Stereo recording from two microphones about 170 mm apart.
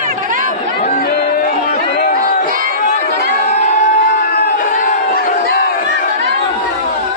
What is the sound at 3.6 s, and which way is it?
Crowd, 50° left (ahead or behind).